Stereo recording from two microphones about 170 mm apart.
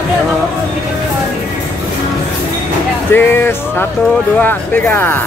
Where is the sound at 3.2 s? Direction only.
10° left (ahead or behind).